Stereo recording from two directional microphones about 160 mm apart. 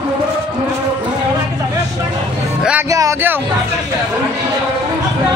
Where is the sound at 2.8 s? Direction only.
20° right (ahead or behind).